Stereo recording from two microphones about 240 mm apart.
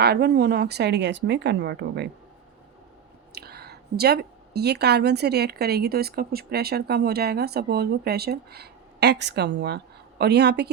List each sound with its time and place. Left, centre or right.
0.0 s speech: right
3.3 s speech: right